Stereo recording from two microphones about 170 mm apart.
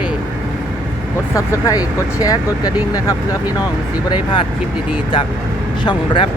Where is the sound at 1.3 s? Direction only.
20° left (ahead or behind).